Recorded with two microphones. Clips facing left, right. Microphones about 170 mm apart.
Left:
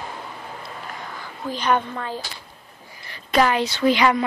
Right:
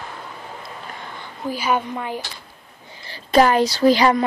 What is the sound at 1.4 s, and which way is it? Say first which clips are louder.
Speech: even; 10° right (ahead or behind).